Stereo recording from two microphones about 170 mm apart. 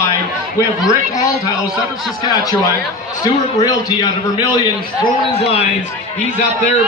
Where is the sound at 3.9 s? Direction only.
25° left (ahead or behind).